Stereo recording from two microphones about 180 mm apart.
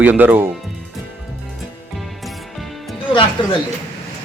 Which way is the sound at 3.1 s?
25° left (ahead or behind).